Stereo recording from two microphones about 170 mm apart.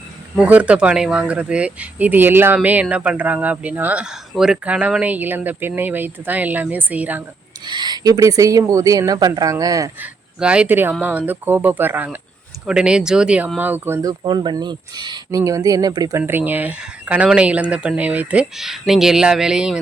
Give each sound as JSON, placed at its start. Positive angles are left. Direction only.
{"t": 0.3, "sound": "speech", "side_deg": -10}
{"t": 7.6, "sound": "speech", "side_deg": -25}
{"t": 10.4, "sound": "speech", "side_deg": -5}